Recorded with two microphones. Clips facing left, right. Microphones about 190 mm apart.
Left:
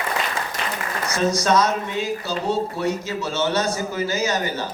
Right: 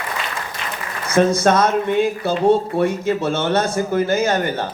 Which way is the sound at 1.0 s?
55° right (ahead or behind).